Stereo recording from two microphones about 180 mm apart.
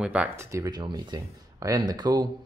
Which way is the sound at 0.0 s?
5° right (ahead or behind).